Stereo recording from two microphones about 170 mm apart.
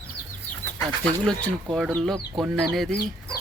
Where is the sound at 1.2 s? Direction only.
5° left (ahead or behind).